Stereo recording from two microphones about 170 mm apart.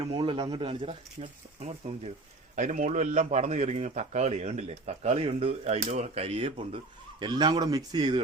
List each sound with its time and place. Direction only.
0.0 s a man's voice: 30° right (ahead or behind)
7.2 s a man's voice: 25° right (ahead or behind)